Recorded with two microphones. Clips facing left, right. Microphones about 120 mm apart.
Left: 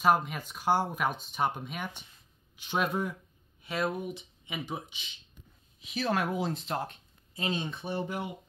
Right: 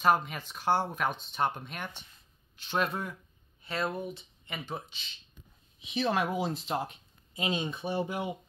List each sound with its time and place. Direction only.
0.0 s speech: 5° left (ahead or behind)
5.8 s speech: centre (ahead or behind)
7.3 s speech: 15° right (ahead or behind)